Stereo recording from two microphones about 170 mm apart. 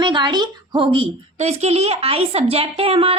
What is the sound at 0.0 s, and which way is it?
A woman's voice, 25° right (ahead or behind).